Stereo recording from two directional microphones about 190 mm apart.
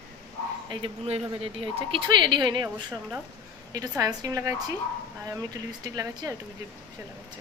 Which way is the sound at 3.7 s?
20° right (ahead or behind).